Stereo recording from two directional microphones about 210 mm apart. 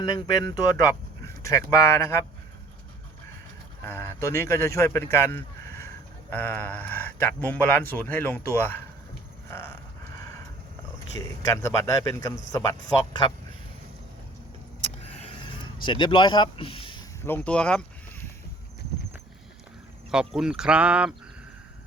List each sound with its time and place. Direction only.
0.0 s speech: 20° left (ahead or behind)
3.8 s speech: 10° left (ahead or behind)
11.2 s speech: 15° left (ahead or behind)
14.8 s vehicle: 30° left (ahead or behind)
17.2 s speech: 10° left (ahead or behind)
20.1 s speech: 5° right (ahead or behind)